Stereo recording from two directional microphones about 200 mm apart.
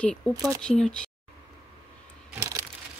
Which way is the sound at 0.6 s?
5° left (ahead or behind).